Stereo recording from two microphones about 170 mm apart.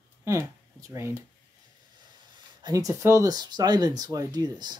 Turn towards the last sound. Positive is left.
turn(degrees=-25)  # may be behind; listen again after turning